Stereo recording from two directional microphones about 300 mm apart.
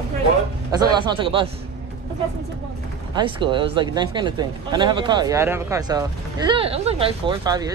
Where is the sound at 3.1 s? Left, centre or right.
Centre.